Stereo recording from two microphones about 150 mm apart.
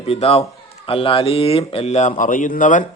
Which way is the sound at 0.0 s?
40° left (ahead or behind).